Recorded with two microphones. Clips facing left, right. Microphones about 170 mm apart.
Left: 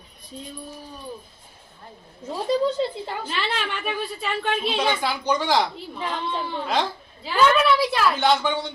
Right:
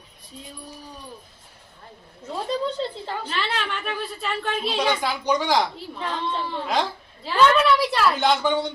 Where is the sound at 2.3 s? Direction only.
5° left (ahead or behind).